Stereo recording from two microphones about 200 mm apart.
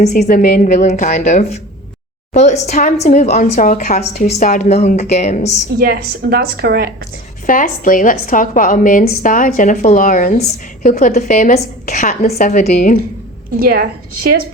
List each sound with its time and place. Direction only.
0.0 s a woman's voice: 35° left (ahead or behind)
5.8 s a woman's voice: 50° right (ahead or behind)
7.4 s a woman's voice: 40° left (ahead or behind)
13.6 s a woman's voice: 50° right (ahead or behind)